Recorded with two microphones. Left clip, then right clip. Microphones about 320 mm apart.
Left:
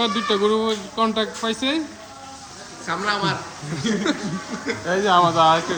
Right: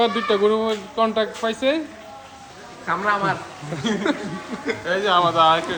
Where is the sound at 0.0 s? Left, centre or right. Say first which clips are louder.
Right 2 dB; centre.